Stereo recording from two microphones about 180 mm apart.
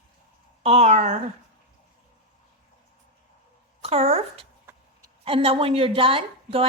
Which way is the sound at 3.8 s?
35° right (ahead or behind).